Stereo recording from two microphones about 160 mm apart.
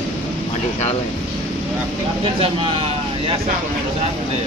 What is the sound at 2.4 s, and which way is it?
Speech, 35° right (ahead or behind).